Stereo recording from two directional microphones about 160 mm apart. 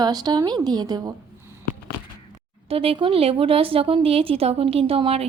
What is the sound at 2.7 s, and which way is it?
A woman's voice, 35° right (ahead or behind).